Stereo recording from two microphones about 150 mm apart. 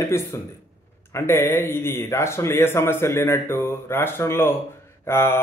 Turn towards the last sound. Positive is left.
turn(degrees=15)  # may be behind; listen again after turning